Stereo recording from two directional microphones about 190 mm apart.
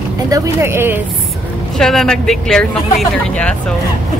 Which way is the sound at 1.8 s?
Centre (ahead or behind).